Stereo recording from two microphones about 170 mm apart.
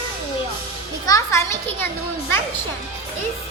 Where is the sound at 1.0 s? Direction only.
20° left (ahead or behind).